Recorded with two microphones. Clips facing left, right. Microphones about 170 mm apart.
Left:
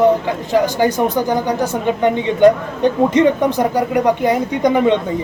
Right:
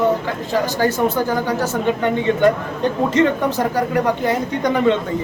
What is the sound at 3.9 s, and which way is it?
Speech, 15° left (ahead or behind).